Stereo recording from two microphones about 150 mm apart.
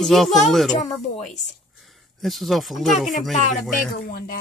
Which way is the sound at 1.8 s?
Centre (ahead or behind).